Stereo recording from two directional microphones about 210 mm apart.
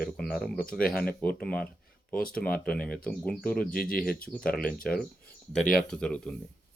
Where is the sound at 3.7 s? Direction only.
45° left (ahead or behind).